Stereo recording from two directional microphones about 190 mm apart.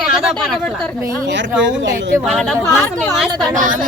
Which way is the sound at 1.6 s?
70° right (ahead or behind).